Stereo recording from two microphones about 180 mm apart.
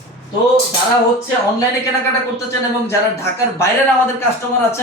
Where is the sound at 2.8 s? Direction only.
15° left (ahead or behind).